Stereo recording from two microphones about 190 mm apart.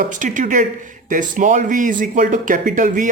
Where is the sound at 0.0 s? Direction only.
40° right (ahead or behind).